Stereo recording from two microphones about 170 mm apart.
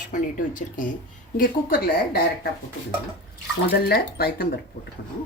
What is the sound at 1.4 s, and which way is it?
A woman's voice, 60° left (ahead or behind).